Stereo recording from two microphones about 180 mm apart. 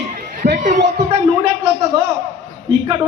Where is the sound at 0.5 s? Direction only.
45° right (ahead or behind).